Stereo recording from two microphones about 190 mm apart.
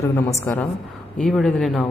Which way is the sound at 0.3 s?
10° left (ahead or behind).